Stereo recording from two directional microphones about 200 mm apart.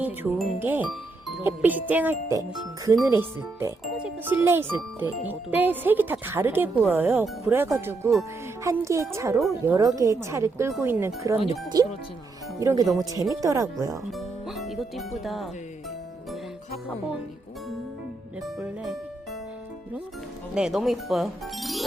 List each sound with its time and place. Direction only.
0.0 s speech: 10° right (ahead or behind)
14.1 s speech: centre (ahead or behind)
18.4 s speech: centre (ahead or behind)
20.5 s speech: 5° right (ahead or behind)